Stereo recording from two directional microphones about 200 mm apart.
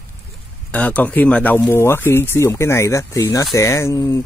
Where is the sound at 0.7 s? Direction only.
5° left (ahead or behind).